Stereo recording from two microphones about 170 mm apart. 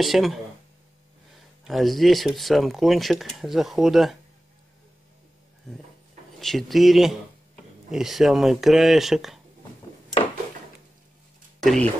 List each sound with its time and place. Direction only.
0.0 s speech: centre (ahead or behind)
1.6 s speech: centre (ahead or behind)
6.4 s speech: centre (ahead or behind)
11.6 s speech: 5° left (ahead or behind)